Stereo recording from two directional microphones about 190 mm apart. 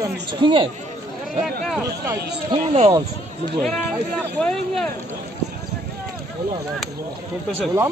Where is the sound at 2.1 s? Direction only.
60° right (ahead or behind).